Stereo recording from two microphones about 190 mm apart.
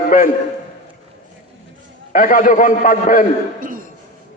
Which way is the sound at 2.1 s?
45° left (ahead or behind).